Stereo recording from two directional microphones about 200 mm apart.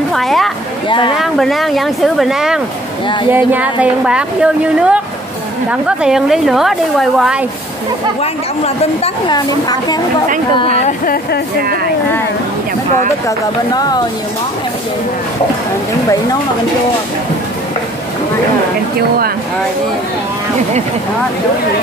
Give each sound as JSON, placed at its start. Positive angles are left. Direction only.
{"t": 0.1, "sound": "speech", "side_deg": 0}
{"t": 0.8, "sound": "a woman's voice", "side_deg": 25}
{"t": 1.1, "sound": "a woman's voice", "side_deg": 0}
{"t": 8.2, "sound": "a woman's voice", "side_deg": 30}
{"t": 9.5, "sound": "a woman's voice", "side_deg": 20}
{"t": 10.6, "sound": "a woman's voice", "side_deg": 30}
{"t": 18.9, "sound": "speech", "side_deg": -50}